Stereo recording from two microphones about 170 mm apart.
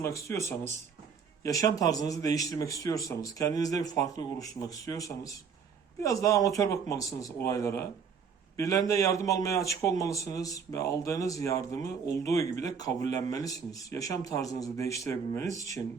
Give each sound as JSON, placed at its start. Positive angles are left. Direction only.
{"t": 0.0, "sound": "a man's voice", "side_deg": 15}